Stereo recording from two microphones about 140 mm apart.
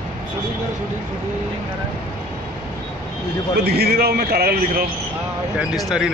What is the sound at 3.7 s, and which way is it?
A man's voice, 90° right.